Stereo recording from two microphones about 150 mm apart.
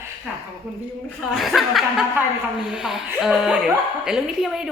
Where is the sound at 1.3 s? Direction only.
Centre (ahead or behind).